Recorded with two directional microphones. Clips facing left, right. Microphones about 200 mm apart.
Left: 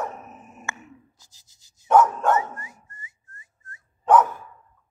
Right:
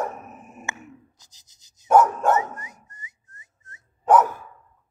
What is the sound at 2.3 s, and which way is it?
Dog, 20° right (ahead or behind).